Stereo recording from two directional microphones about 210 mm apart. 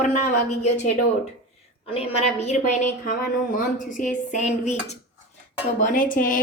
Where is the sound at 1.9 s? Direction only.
30° left (ahead or behind).